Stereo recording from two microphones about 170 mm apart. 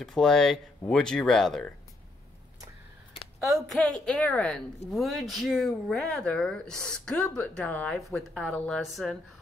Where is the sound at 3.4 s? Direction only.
Centre (ahead or behind).